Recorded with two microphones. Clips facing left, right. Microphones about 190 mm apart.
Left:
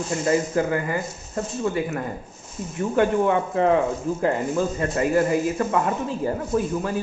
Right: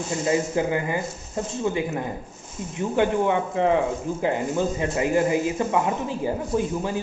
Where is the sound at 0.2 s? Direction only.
15° right (ahead or behind).